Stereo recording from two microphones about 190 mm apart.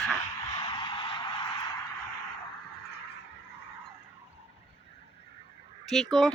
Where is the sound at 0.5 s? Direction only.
25° left (ahead or behind).